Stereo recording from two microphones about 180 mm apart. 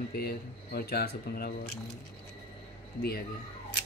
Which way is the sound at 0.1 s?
60° left (ahead or behind).